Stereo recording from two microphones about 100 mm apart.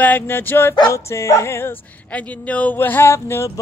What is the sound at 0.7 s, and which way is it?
Speech, 40° left (ahead or behind).